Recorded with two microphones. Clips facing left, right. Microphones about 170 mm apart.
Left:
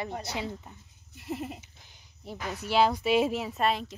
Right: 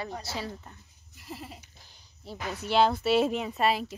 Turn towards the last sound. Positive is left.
turn(degrees=0)  # may be behind; listen again after turning